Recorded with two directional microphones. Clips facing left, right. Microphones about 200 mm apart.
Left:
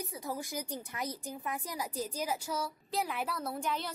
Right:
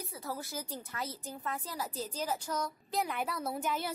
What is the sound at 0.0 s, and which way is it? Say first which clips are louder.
Speech: left 2 dB; 15° left (ahead or behind).